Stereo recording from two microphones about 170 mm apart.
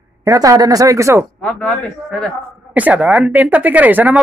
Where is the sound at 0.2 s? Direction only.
20° right (ahead or behind).